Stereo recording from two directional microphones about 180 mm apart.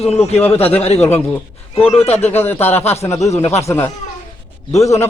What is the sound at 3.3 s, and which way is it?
Speech, 35° left (ahead or behind).